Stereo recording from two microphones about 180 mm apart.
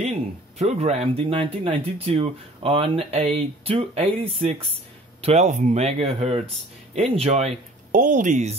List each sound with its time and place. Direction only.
0.6 s speech: 35° right (ahead or behind)